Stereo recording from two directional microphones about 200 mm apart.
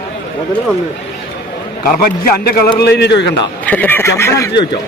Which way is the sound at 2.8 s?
55° left (ahead or behind).